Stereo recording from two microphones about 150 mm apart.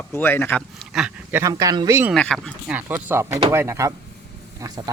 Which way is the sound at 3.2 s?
45° right (ahead or behind).